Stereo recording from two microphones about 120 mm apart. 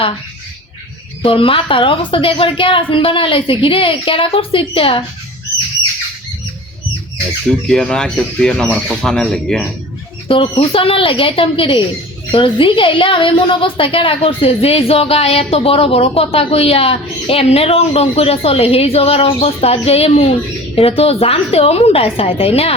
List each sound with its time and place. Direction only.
1.2 s a woman's voice: 50° left (ahead or behind)
7.7 s speech: 5° left (ahead or behind)
10.2 s a woman's voice: 50° left (ahead or behind)